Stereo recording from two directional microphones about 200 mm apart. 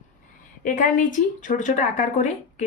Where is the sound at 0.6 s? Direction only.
40° left (ahead or behind).